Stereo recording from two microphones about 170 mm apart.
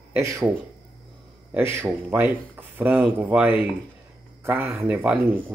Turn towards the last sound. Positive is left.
turn(degrees=-10)  # may be behind; listen again after turning